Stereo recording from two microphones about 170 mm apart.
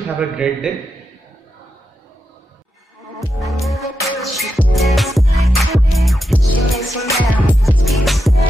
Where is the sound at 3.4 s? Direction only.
Centre (ahead or behind).